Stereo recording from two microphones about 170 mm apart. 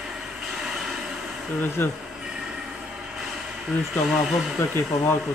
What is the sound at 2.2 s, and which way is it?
Train, 5° right (ahead or behind).